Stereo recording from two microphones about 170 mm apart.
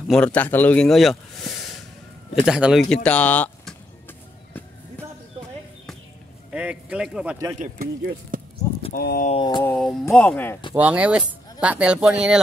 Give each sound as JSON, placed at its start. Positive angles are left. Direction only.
{"t": 0.1, "sound": "speech", "side_deg": 10}
{"t": 6.5, "sound": "speech", "side_deg": -5}
{"t": 7.5, "sound": "speech", "side_deg": -55}
{"t": 8.9, "sound": "speech", "side_deg": 60}
{"t": 9.3, "sound": "mantra", "side_deg": 30}
{"t": 9.7, "sound": "speech", "side_deg": 5}
{"t": 10.7, "sound": "speech", "side_deg": -10}